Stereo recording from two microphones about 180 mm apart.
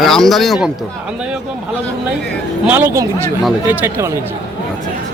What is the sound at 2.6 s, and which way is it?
Speech, 10° right (ahead or behind).